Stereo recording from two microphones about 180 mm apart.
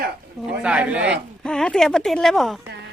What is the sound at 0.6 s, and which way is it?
Speech, 5° right (ahead or behind).